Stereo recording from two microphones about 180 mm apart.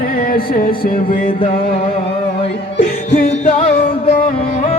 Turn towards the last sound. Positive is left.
turn(degrees=35)  # may be behind; listen again after turning